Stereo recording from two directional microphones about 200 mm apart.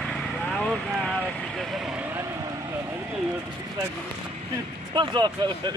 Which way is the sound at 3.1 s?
10° right (ahead or behind).